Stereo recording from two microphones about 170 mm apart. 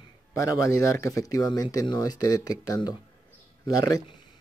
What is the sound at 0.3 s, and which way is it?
A man's voice, 15° left (ahead or behind).